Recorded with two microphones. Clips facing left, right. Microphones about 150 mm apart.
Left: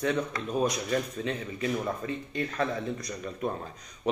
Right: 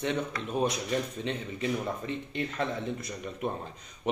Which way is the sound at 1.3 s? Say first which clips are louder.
Even; 25° right (ahead or behind).